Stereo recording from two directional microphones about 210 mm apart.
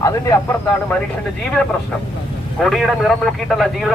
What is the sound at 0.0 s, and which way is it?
Speech, 15° left (ahead or behind).